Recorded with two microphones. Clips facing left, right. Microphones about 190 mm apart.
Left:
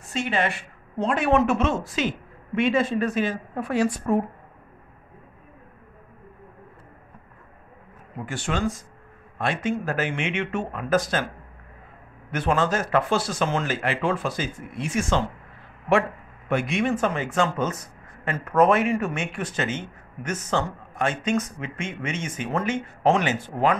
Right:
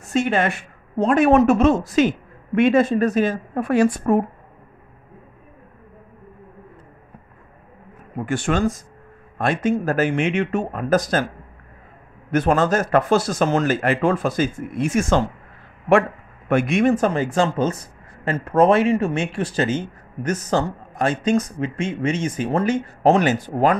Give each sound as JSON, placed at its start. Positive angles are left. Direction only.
{"t": 0.1, "sound": "speech", "side_deg": -50}
{"t": 8.3, "sound": "a man's voice", "side_deg": -50}
{"t": 12.3, "sound": "speech", "side_deg": -45}
{"t": 16.4, "sound": "a man's voice", "side_deg": -50}